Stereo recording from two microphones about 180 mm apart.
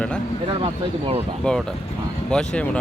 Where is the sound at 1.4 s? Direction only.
5° left (ahead or behind).